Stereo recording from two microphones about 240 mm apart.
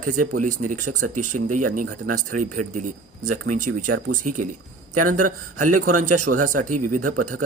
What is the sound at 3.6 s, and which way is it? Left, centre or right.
Speech, right.